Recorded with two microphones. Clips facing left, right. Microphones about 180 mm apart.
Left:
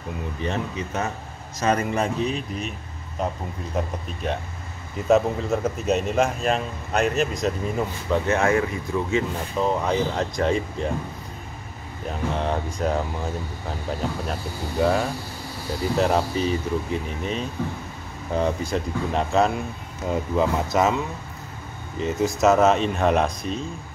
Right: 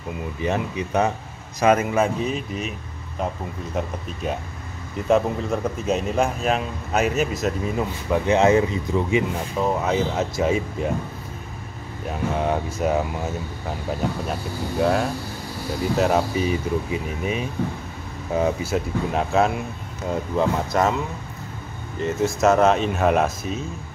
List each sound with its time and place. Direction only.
0.4 s speech: 15° right (ahead or behind)
3.7 s speech: centre (ahead or behind)
8.3 s speech: 20° right (ahead or behind)
9.6 s speech: 5° right (ahead or behind)
12.1 s speech: 5° right (ahead or behind)
14.8 s speech: centre (ahead or behind)
22.0 s speech: centre (ahead or behind)